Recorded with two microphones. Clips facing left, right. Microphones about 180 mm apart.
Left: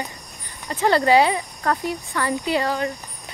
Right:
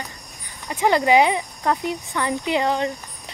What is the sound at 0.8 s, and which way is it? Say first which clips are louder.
Speech: even; 15° right (ahead or behind).